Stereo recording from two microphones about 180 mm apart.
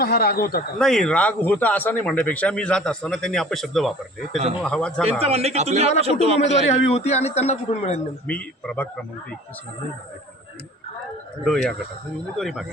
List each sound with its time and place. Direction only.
0.0 s speech: 60° left (ahead or behind)
0.8 s speech: 5° left (ahead or behind)
5.2 s a man's voice: 35° right (ahead or behind)
6.5 s a man's voice: 40° left (ahead or behind)
8.3 s speech: 5° left (ahead or behind)
11.4 s speech: centre (ahead or behind)